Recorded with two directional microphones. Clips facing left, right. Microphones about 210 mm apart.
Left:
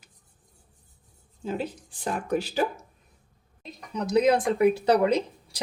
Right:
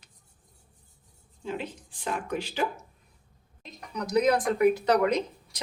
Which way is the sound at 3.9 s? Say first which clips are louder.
Left 2 dB; 25° left (ahead or behind).